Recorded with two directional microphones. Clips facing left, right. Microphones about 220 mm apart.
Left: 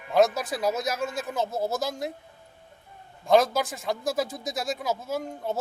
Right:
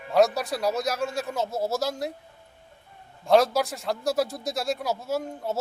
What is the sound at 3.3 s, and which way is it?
A man's voice, centre (ahead or behind).